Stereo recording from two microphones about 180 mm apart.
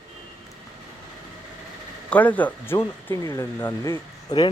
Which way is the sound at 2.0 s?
10° left (ahead or behind).